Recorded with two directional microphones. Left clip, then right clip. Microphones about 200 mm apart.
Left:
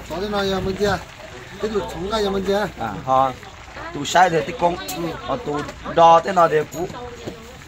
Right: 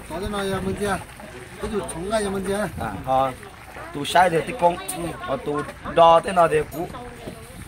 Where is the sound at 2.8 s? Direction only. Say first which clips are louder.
Left 2 dB; 25° right (ahead or behind).